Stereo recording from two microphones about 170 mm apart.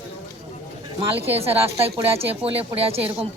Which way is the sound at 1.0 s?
35° right (ahead or behind).